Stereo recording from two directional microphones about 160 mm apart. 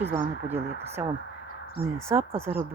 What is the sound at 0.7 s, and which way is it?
Speech, 40° right (ahead or behind).